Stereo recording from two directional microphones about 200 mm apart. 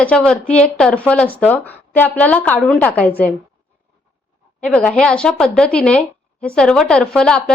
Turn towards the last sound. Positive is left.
turn(degrees=5)  # may be behind; listen again after turning